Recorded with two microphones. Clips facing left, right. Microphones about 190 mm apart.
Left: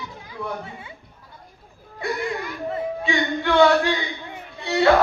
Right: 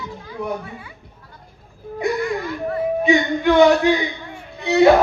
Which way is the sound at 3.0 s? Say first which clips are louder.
Right 8 dB; 20° right (ahead or behind).